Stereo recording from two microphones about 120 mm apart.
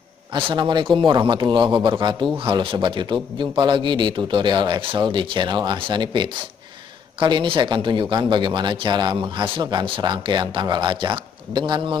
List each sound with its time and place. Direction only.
0.3 s speech: 45° right (ahead or behind)